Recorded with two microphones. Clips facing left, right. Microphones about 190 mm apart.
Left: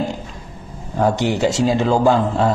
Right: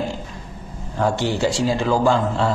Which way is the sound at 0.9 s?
15° left (ahead or behind).